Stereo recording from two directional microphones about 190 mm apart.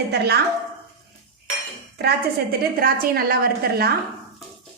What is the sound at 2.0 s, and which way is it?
A woman's voice, 55° right (ahead or behind).